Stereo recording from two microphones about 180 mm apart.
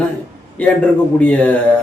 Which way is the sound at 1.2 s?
10° left (ahead or behind).